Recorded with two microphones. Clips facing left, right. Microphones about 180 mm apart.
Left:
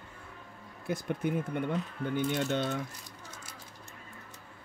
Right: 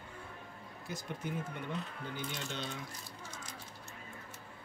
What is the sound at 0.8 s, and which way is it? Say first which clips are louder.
Speech: left 9 dB; 55° left (ahead or behind).